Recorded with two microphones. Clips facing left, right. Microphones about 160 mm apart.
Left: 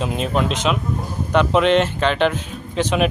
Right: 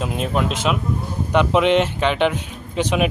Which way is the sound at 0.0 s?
5° right (ahead or behind).